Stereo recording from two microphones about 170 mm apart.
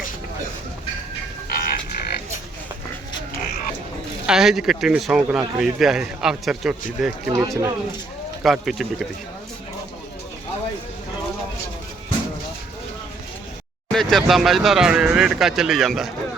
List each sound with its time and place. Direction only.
1.5 s a sound: 65° left (ahead or behind)
4.3 s speech: 5° right (ahead or behind)
7.3 s speech: 20° right (ahead or behind)
8.4 s speech: centre (ahead or behind)
13.9 s speech: centre (ahead or behind)